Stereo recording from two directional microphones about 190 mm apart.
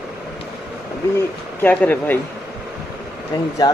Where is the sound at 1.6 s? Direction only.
10° left (ahead or behind).